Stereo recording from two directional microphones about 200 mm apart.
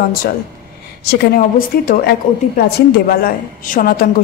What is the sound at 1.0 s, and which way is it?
A woman's voice, 55° left (ahead or behind).